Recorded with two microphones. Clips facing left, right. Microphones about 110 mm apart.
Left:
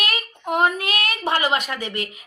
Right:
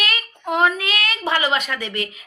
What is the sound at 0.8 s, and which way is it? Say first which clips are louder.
A woman's voice: even; 50° left (ahead or behind).